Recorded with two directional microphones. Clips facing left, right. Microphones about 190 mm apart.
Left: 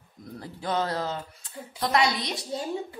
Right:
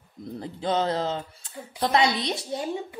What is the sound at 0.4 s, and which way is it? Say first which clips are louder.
A woman's voice: right 3 dB; 25° right (ahead or behind).